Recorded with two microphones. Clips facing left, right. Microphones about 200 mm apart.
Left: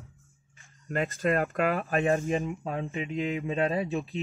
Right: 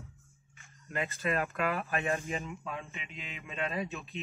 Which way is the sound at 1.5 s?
35° left (ahead or behind).